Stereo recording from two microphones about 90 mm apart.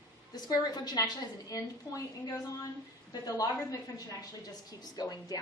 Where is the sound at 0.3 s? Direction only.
50° left (ahead or behind).